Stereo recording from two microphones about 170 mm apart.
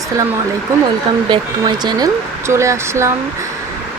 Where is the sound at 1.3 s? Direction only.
25° right (ahead or behind).